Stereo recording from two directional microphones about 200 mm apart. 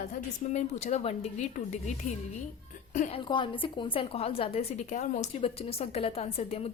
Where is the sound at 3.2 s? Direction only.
25° left (ahead or behind).